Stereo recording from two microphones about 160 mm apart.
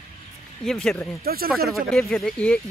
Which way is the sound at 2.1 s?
5° left (ahead or behind).